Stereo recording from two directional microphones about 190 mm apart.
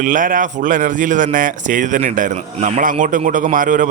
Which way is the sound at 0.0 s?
45° right (ahead or behind).